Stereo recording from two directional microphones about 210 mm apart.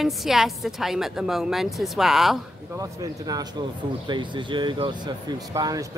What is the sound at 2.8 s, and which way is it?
Speech, 15° right (ahead or behind).